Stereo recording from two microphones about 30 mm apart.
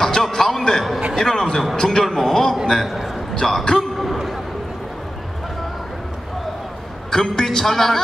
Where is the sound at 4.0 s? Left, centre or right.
Centre.